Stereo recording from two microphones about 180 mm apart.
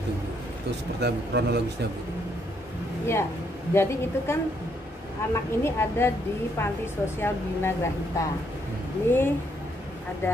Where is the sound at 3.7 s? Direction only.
15° left (ahead or behind).